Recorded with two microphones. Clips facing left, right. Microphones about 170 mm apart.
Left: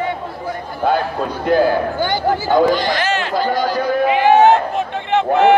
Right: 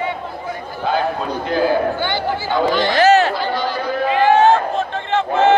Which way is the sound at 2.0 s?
45° left (ahead or behind).